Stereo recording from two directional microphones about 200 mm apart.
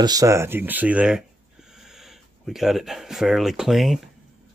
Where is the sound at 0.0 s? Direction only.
20° right (ahead or behind); by 4.0 s centre (ahead or behind).